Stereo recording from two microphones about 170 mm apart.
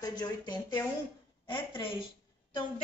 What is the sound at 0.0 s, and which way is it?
A woman's voice, 25° left (ahead or behind).